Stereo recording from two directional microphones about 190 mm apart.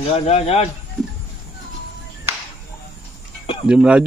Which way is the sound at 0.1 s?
35° left (ahead or behind).